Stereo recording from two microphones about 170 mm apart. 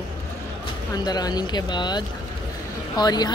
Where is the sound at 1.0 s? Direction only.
25° left (ahead or behind).